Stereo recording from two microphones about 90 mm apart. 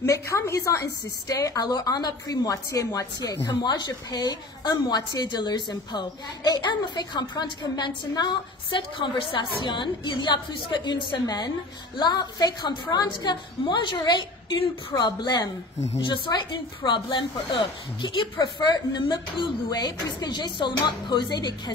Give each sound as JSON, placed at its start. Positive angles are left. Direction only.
{"t": 0.0, "sound": "a woman's voice", "side_deg": 35}